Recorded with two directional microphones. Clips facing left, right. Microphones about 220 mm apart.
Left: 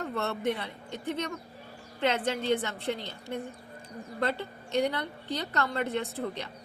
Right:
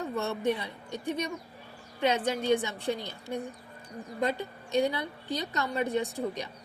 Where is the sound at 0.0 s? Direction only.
10° right (ahead or behind).